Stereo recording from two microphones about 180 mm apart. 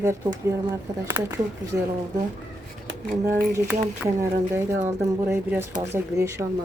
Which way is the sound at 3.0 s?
55° right (ahead or behind).